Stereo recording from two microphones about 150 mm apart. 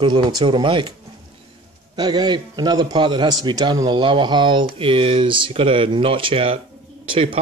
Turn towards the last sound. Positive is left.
turn(degrees=-35)  # may be behind; listen again after turning